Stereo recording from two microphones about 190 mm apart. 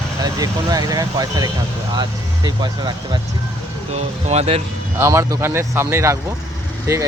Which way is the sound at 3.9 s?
35° right (ahead or behind).